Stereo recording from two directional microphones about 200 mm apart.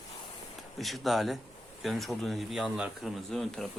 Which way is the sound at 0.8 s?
Centre (ahead or behind).